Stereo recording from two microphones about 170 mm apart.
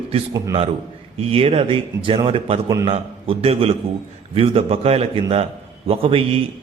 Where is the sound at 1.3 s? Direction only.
35° right (ahead or behind).